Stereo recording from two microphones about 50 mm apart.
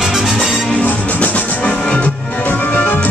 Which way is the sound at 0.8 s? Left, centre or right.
Left.